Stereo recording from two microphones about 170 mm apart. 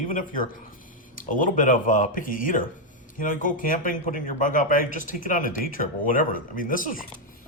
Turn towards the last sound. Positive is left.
turn(degrees=55)  # may be behind; listen again after turning